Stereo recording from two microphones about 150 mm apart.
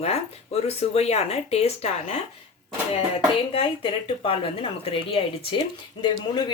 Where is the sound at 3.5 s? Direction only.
40° left (ahead or behind).